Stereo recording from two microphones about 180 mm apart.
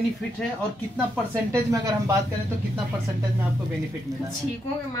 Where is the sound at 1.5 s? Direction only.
15° right (ahead or behind).